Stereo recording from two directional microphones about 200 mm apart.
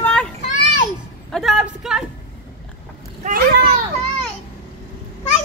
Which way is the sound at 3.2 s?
40° right (ahead or behind).